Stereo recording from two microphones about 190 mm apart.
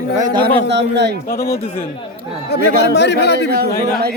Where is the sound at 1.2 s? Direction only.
50° left (ahead or behind).